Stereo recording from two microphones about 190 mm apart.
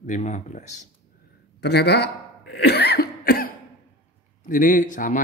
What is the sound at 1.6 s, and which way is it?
Cough, 60° left (ahead or behind).